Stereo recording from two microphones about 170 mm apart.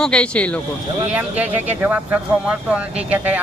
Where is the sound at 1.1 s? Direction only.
10° right (ahead or behind).